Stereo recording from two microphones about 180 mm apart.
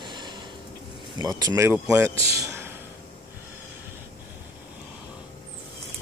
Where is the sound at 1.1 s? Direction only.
20° right (ahead or behind).